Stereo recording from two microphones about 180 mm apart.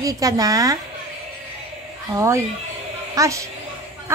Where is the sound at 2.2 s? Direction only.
15° right (ahead or behind).